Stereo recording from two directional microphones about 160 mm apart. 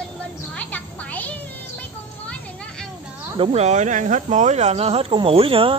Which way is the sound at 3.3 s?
35° right (ahead or behind).